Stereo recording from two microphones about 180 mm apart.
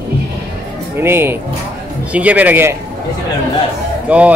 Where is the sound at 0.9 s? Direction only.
15° right (ahead or behind).